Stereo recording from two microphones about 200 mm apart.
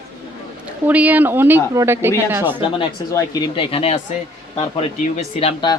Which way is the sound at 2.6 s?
20° left (ahead or behind).